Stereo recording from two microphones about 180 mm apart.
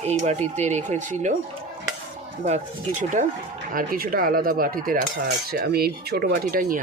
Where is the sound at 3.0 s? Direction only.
45° right (ahead or behind).